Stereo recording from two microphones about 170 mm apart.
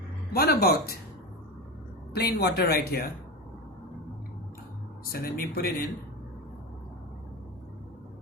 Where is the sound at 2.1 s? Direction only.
70° left (ahead or behind).